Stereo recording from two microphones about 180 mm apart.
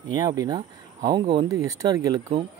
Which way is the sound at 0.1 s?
20° right (ahead or behind).